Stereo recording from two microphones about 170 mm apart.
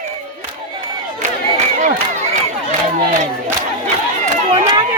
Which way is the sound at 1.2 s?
45° right (ahead or behind).